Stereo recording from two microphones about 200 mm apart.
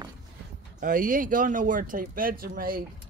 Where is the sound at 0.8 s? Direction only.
45° right (ahead or behind).